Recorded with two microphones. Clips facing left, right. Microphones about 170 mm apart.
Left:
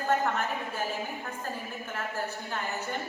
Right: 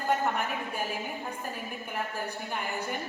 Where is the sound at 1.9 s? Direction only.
15° right (ahead or behind).